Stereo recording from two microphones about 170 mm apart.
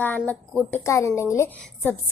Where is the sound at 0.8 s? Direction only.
15° left (ahead or behind).